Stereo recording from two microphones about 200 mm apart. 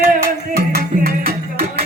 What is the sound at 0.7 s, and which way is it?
Music, 50° right (ahead or behind).